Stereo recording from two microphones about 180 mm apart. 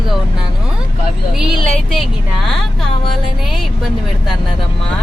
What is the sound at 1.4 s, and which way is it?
Speech, centre (ahead or behind).